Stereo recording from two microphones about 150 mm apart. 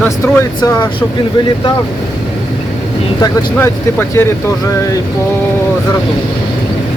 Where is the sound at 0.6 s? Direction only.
30° left (ahead or behind).